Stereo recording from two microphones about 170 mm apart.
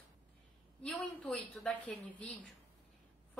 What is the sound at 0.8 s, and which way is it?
A woman's voice, 5° left (ahead or behind).